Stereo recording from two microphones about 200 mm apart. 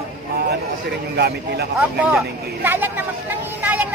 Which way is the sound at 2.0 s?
5° right (ahead or behind).